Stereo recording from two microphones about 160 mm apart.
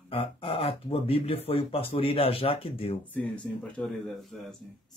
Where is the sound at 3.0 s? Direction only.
10° left (ahead or behind).